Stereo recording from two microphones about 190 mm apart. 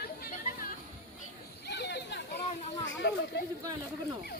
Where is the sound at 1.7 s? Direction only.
60° left (ahead or behind).